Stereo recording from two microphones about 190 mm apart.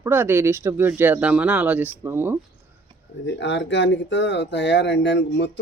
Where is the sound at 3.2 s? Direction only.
70° left (ahead or behind).